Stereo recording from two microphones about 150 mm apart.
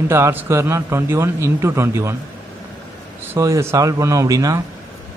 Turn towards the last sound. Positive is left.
turn(degrees=-25)  # may be behind; listen again after turning